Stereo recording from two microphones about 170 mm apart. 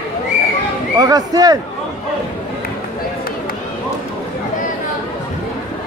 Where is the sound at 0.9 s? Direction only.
20° right (ahead or behind).